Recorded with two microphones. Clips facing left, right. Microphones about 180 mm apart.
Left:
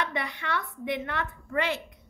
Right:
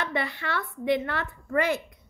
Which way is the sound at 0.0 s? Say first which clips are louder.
Right 2 dB; 35° right (ahead or behind).